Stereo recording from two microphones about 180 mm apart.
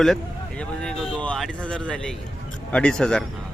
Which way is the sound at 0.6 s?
5° left (ahead or behind).